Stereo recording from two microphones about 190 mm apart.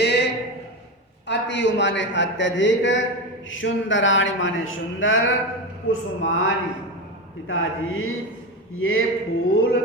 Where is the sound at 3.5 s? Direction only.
85° left.